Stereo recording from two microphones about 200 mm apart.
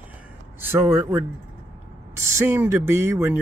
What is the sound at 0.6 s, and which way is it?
Speech, 10° right (ahead or behind).